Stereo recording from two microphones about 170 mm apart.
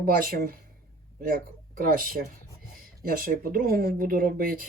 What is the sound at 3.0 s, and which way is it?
Speech, 60° right (ahead or behind).